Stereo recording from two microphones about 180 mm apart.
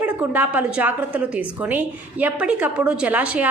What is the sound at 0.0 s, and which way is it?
A woman's voice, 10° right (ahead or behind).